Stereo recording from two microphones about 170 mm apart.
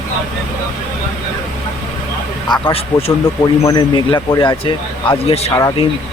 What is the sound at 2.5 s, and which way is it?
Speech, 30° left (ahead or behind).